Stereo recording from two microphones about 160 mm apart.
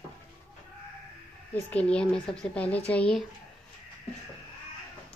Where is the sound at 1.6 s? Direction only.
5° left (ahead or behind).